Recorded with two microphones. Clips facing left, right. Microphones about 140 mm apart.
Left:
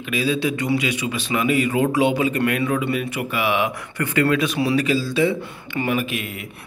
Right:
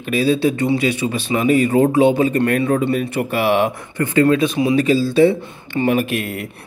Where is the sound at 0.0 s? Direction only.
35° right (ahead or behind).